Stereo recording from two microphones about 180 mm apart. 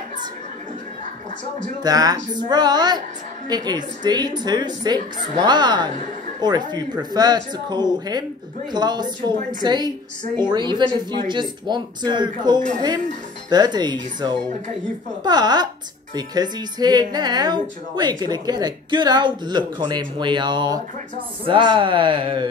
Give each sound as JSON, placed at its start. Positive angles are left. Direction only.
{"t": 1.8, "sound": "a woman's voice", "side_deg": -20}